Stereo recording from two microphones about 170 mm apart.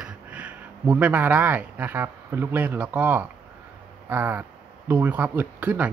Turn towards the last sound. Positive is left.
turn(degrees=-10)  # may be behind; listen again after turning